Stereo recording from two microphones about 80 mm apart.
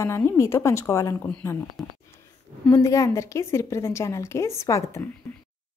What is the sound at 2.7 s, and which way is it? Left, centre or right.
A woman's voice, left.